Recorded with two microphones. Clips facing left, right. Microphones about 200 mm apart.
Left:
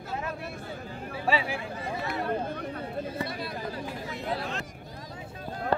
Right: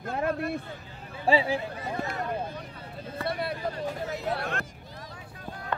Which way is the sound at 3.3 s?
60° right (ahead or behind).